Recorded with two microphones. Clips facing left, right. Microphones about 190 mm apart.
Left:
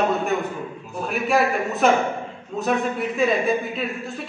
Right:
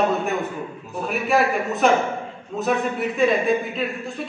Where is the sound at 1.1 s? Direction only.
Centre (ahead or behind).